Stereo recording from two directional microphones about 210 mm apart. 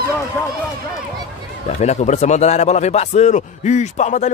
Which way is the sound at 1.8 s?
30° left (ahead or behind).